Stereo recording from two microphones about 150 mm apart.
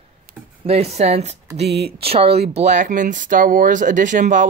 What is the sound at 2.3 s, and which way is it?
Speech, 50° right (ahead or behind).